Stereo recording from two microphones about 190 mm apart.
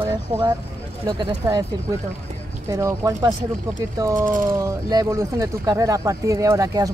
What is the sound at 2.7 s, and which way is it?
Speech, 15° right (ahead or behind).